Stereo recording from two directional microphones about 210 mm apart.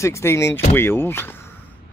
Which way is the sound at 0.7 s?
10° left (ahead or behind).